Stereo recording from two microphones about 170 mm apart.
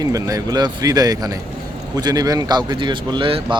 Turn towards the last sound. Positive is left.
turn(degrees=-30)  # may be behind; listen again after turning